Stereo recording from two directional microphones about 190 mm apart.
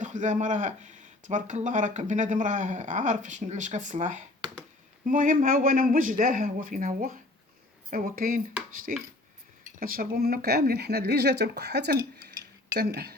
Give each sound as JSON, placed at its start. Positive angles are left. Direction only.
{"t": 0.0, "sound": "a man's voice", "side_deg": -40}